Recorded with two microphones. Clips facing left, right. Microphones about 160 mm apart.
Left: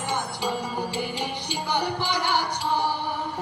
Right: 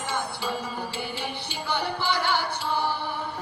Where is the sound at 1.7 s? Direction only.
15° left (ahead or behind).